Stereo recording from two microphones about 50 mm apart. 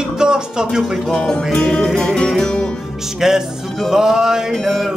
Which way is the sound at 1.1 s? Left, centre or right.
Centre.